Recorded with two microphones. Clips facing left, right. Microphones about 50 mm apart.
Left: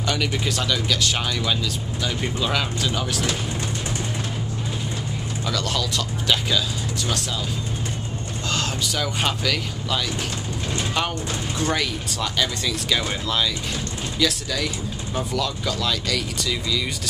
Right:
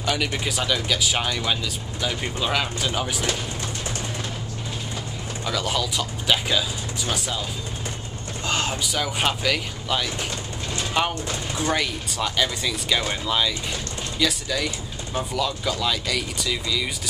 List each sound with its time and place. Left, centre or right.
0.0 s speech: centre
5.4 s speech: centre
8.5 s a sound: right
8.8 s speech: centre
14.1 s speech: centre